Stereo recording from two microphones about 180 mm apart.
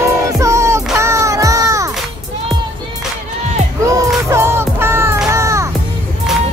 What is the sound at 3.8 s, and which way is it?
Music, 15° right (ahead or behind).